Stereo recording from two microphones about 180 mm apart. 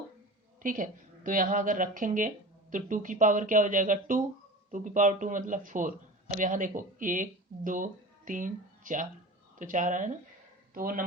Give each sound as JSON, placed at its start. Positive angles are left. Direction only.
{"t": 0.6, "sound": "a man's voice", "side_deg": -50}